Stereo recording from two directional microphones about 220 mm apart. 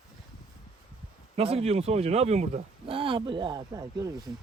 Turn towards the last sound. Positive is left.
turn(degrees=-15)  # may be behind; listen again after turning